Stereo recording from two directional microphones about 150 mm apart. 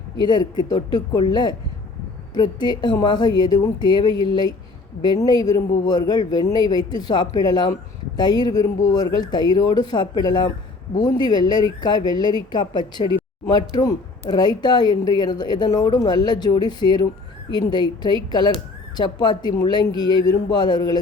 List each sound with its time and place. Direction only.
0.2 s a woman's voice: 30° left (ahead or behind)